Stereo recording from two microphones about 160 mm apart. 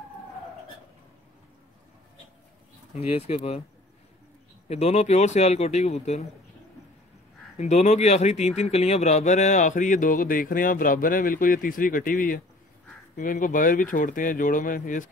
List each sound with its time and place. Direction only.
3.1 s speech: 40° left (ahead or behind)
4.6 s speech: 40° left (ahead or behind)
7.5 s speech: 45° left (ahead or behind)